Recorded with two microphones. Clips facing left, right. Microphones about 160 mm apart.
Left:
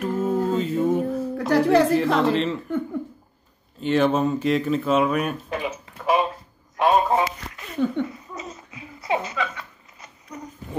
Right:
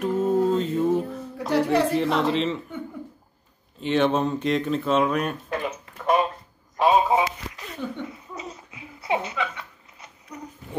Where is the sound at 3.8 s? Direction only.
Centre (ahead or behind).